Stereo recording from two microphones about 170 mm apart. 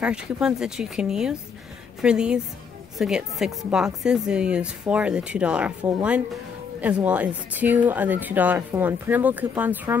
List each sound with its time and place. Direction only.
0.0 s speech: 5° right (ahead or behind)